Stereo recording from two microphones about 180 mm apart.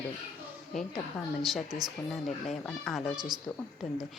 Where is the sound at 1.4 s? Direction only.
Centre (ahead or behind).